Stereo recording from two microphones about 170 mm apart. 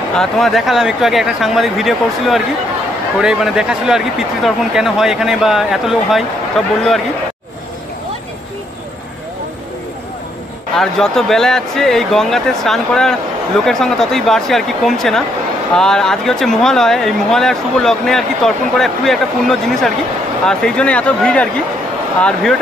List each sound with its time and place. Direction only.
0.2 s speech: centre (ahead or behind)
10.8 s speech: centre (ahead or behind)